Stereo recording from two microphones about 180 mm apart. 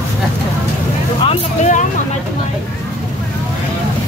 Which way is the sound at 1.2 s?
40° left (ahead or behind).